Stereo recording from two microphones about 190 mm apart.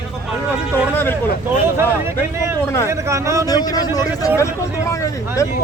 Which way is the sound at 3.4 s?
20° left (ahead or behind).